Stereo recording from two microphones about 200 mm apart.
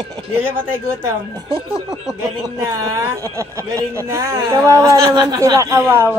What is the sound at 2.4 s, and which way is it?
Speech, 15° right (ahead or behind).